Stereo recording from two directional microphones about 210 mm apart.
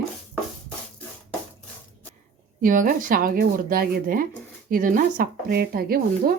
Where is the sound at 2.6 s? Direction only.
40° right (ahead or behind).